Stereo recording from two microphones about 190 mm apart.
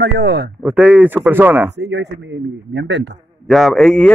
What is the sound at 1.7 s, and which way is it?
Speech, 65° right (ahead or behind).